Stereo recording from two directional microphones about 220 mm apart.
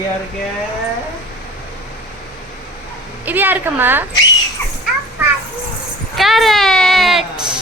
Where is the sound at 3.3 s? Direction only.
10° right (ahead or behind).